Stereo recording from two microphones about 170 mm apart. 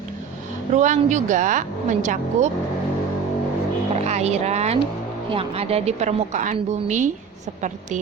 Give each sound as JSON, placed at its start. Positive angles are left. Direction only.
{"t": 0.7, "sound": "speech", "side_deg": -45}
{"t": 4.0, "sound": "a woman's voice", "side_deg": -40}